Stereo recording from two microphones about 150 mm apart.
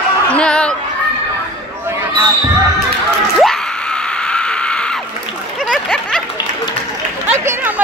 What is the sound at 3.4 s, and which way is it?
Screaming, 5° left (ahead or behind).